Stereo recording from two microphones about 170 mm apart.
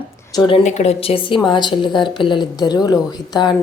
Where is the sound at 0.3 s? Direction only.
30° left (ahead or behind).